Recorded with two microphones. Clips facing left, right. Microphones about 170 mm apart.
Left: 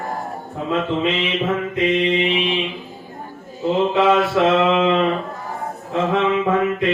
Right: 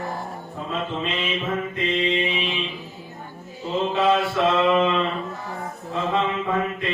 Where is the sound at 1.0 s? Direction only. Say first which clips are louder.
Left 6 dB; 75° left (ahead or behind).